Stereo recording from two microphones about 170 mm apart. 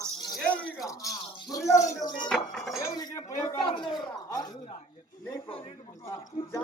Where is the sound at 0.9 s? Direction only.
20° left (ahead or behind).